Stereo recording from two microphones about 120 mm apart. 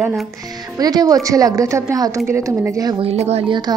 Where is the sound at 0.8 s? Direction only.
30° right (ahead or behind).